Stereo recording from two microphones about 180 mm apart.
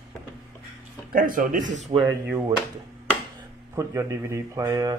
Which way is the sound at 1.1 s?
50° right (ahead or behind).